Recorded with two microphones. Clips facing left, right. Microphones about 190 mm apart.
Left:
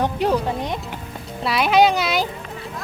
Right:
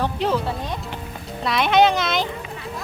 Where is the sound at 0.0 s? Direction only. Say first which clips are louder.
Left 2 dB; 15° left (ahead or behind).